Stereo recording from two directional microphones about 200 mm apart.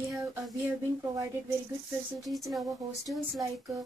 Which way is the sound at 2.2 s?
Centre (ahead or behind).